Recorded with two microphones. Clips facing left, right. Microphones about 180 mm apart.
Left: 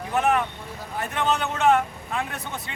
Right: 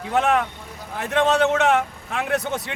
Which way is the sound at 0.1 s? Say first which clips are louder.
Right 2 dB; 90° right.